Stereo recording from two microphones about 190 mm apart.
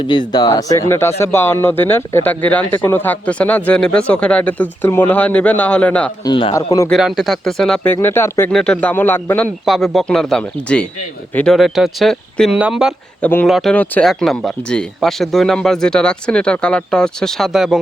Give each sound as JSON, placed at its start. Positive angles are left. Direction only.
{"t": 0.0, "sound": "speech", "side_deg": 25}
{"t": 6.2, "sound": "speech", "side_deg": 20}
{"t": 6.9, "sound": "speech", "side_deg": 0}
{"t": 7.9, "sound": "speech", "side_deg": 15}
{"t": 13.2, "sound": "speech", "side_deg": 5}